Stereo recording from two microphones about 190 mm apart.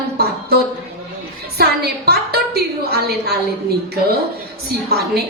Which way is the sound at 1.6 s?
55° right (ahead or behind).